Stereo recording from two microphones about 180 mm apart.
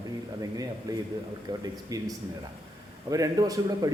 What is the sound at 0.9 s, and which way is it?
Speech, 20° right (ahead or behind).